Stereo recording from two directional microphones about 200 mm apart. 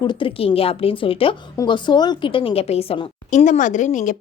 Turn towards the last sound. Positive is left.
turn(degrees=40)  # may be behind; listen again after turning